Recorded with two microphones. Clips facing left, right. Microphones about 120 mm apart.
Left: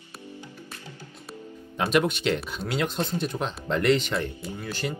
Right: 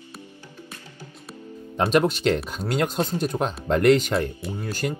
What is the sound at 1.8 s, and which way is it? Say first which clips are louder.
Speech: right 3 dB; 35° right (ahead or behind).